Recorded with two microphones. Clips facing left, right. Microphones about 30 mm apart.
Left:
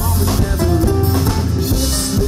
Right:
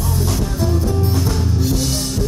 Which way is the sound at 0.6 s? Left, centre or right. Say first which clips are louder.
Left 4 dB; left.